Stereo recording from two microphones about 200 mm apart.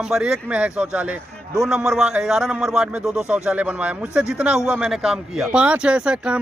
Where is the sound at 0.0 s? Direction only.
Centre (ahead or behind).